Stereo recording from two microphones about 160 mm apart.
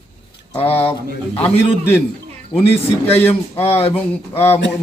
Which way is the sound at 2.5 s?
40° left (ahead or behind).